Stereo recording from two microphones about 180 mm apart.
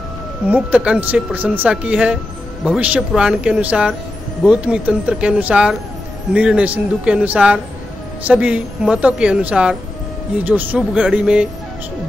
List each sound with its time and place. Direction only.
0.5 s speech: 10° right (ahead or behind)